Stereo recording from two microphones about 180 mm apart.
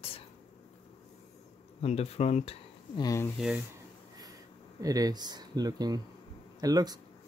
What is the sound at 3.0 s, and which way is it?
Speech, 15° left (ahead or behind).